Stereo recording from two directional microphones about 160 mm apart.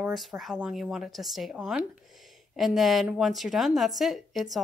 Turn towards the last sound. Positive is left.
turn(degrees=0)  # may be behind; listen again after turning